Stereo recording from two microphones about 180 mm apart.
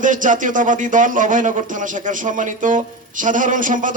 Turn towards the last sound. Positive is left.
turn(degrees=-45)  # may be behind; listen again after turning